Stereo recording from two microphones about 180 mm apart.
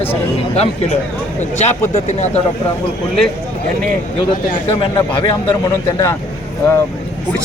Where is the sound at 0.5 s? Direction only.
35° left (ahead or behind).